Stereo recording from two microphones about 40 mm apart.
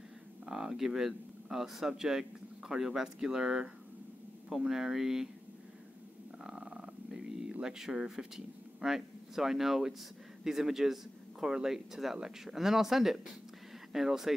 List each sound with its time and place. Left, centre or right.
0.5 s speech: centre
6.4 s a sound: right
7.6 s speech: centre